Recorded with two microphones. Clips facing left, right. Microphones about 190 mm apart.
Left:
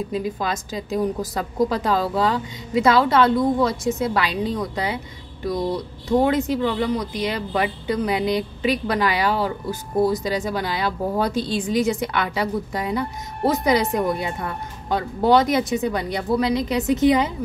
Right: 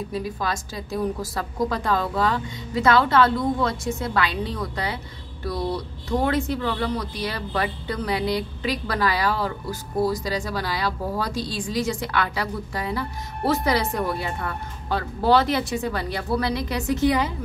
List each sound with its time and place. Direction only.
0.1 s speech: 20° left (ahead or behind)